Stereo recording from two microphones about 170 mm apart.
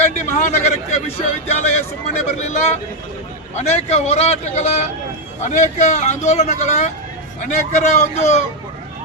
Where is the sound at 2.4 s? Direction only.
40° left (ahead or behind).